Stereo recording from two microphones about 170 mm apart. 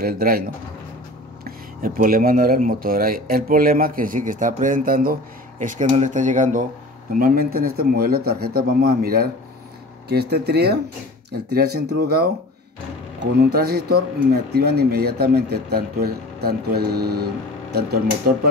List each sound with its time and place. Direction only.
0.0 s speech: 60° right (ahead or behind)
7.1 s speech: 55° right (ahead or behind)